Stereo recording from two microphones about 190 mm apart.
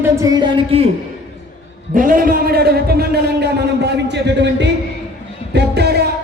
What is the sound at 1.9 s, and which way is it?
A man's voice, 45° right (ahead or behind).